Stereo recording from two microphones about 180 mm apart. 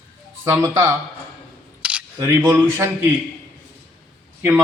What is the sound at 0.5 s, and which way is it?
Speech, 15° right (ahead or behind).